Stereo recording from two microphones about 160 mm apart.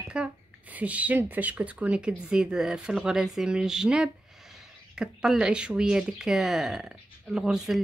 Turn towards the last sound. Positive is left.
turn(degrees=0)  # may be behind; listen again after turning